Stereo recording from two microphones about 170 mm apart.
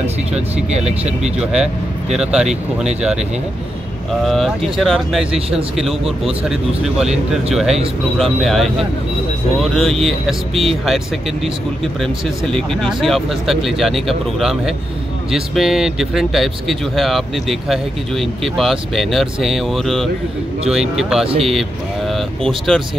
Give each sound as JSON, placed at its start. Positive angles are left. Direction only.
{"t": 0.7, "sound": "speech", "side_deg": -40}
{"t": 1.4, "sound": "speech", "side_deg": -5}
{"t": 4.7, "sound": "speech", "side_deg": 0}
{"t": 10.5, "sound": "speech", "side_deg": -35}
{"t": 11.8, "sound": "speech", "side_deg": 0}